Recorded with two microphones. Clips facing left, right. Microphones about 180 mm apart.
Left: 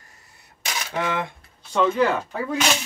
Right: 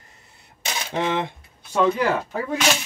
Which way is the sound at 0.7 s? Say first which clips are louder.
Right 2 dB; 25° right (ahead or behind).